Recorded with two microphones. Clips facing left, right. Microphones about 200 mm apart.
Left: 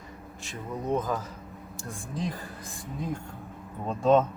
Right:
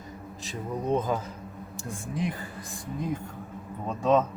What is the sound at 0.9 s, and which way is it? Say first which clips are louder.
Speech: right 2 dB; 25° right (ahead or behind).